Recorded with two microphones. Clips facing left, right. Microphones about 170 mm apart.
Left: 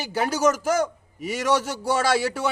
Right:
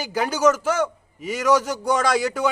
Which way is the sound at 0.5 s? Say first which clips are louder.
Even; 35° left (ahead or behind).